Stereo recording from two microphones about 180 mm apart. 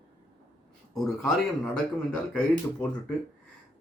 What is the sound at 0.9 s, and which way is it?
Speech, 5° left (ahead or behind).